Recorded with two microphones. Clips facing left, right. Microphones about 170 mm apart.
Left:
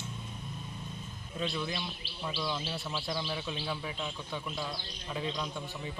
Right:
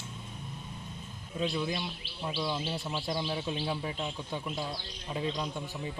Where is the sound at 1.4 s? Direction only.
15° right (ahead or behind).